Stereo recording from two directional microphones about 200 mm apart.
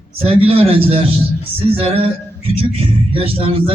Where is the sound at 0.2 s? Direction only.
30° right (ahead or behind).